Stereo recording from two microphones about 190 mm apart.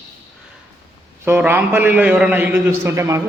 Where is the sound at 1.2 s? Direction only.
10° right (ahead or behind).